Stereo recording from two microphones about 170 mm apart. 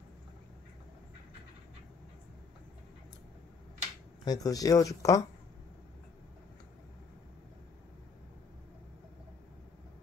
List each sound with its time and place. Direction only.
4.2 s speech: 20° left (ahead or behind)